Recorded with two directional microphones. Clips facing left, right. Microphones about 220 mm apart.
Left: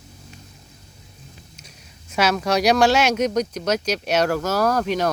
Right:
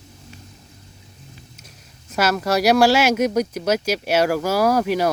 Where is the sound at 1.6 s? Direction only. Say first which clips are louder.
Even; centre (ahead or behind).